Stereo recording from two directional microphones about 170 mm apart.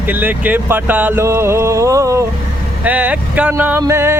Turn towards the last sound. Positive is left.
turn(degrees=-15)  # may be behind; listen again after turning